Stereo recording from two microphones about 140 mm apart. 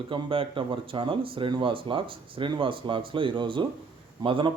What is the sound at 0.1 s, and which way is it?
A man's voice, 40° right (ahead or behind).